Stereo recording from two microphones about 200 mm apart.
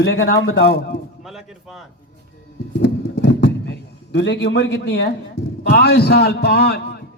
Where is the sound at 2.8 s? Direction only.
60° left (ahead or behind).